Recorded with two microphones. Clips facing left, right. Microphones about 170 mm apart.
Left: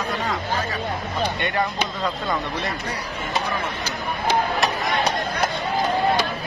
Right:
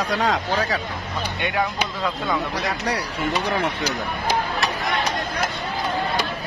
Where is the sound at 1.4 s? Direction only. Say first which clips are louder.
Even; 5° right (ahead or behind).